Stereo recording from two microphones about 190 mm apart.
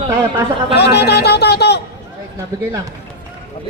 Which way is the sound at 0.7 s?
60° left (ahead or behind).